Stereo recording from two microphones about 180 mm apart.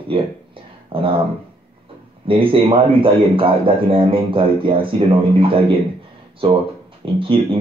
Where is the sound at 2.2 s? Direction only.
30° right (ahead or behind).